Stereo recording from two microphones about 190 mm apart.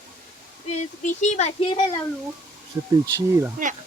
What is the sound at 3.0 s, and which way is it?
Speech, 20° right (ahead or behind).